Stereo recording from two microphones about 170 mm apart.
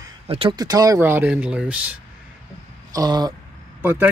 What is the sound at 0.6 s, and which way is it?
Speech, 20° right (ahead or behind).